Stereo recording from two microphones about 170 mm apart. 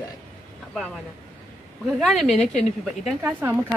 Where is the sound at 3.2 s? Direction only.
10° right (ahead or behind).